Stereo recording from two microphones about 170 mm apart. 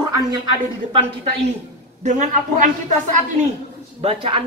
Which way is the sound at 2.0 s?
45° right (ahead or behind).